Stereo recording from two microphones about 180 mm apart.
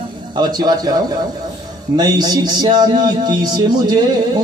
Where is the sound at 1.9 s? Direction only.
20° right (ahead or behind).